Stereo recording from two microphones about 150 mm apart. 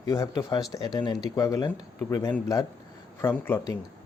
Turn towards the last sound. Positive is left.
turn(degrees=15)  # may be behind; listen again after turning